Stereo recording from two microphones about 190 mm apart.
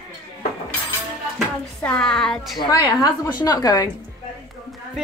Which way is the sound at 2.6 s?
20° left (ahead or behind).